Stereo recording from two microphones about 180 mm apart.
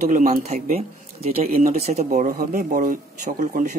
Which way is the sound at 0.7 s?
35° right (ahead or behind).